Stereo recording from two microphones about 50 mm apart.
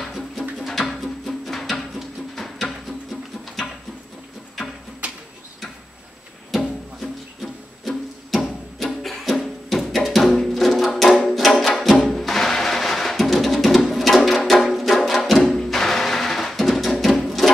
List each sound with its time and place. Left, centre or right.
0.0 s music: centre
5.0 s bird: right
6.5 s music: centre